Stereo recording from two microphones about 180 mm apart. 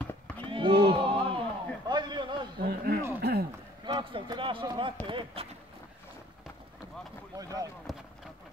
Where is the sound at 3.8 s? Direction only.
30° right (ahead or behind).